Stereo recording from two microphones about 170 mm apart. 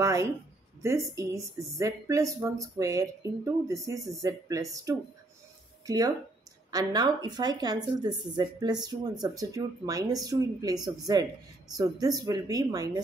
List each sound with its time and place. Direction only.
0.0 s a woman's voice: 20° right (ahead or behind)